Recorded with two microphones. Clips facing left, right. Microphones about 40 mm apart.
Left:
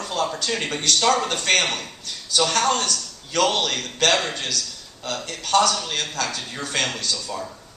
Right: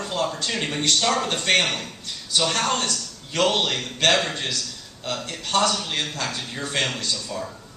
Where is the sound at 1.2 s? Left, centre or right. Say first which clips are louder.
Even; right.